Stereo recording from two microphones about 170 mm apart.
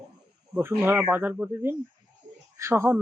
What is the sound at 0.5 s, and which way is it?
Speech, 10° right (ahead or behind).